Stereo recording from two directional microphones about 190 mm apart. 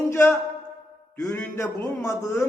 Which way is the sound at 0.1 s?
15° left (ahead or behind).